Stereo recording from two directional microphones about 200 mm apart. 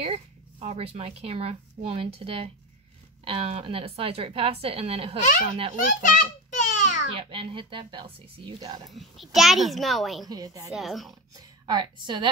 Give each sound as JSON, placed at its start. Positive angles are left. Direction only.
{"t": 0.0, "sound": "a woman's voice", "side_deg": -30}
{"t": 6.1, "sound": "a sound", "side_deg": 35}
{"t": 7.2, "sound": "a woman's voice", "side_deg": -25}
{"t": 8.9, "sound": "a child's voice", "side_deg": 0}
{"t": 10.2, "sound": "a woman's voice", "side_deg": -20}
{"t": 10.7, "sound": "a child's voice", "side_deg": 0}
{"t": 11.6, "sound": "a woman's voice", "side_deg": -20}